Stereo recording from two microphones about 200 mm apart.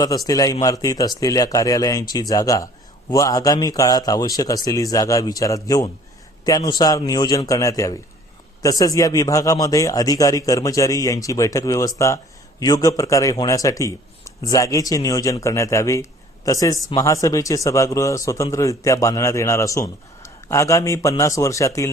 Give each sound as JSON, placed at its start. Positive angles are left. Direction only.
{"t": 0.3, "sound": "a man's voice", "side_deg": 15}